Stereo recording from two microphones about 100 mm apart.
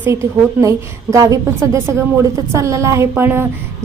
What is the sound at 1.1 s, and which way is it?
A woman's voice, 35° right (ahead or behind).